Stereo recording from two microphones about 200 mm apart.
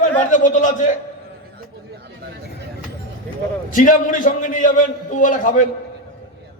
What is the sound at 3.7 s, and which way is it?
A man's voice, 40° left (ahead or behind).